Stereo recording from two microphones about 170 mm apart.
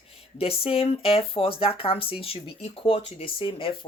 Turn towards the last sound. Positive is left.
turn(degrees=30)  # may be behind; listen again after turning